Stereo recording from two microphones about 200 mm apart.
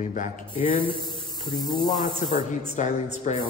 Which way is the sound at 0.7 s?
25° right (ahead or behind).